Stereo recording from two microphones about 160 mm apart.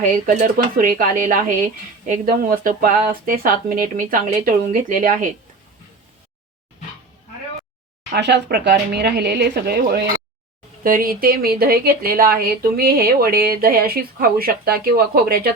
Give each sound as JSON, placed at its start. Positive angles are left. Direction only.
{"t": 0.3, "sound": "speech", "side_deg": -55}
{"t": 8.1, "sound": "speech", "side_deg": -90}
{"t": 10.8, "sound": "speech", "side_deg": -65}